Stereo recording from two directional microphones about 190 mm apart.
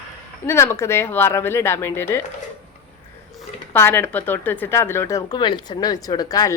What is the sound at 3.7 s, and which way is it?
Speech, 10° left (ahead or behind).